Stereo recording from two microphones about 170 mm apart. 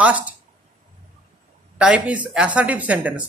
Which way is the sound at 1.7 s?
5° right (ahead or behind).